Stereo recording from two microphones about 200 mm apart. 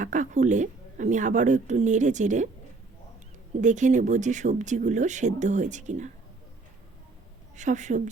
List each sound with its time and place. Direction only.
0.0 s speech: 40° right (ahead or behind)
3.6 s speech: 40° right (ahead or behind)
7.5 s speech: 35° right (ahead or behind)